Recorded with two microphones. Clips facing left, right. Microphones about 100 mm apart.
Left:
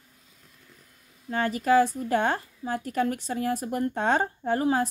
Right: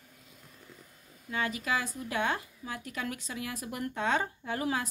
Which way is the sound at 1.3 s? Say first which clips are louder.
Left 10 dB; 40° left (ahead or behind).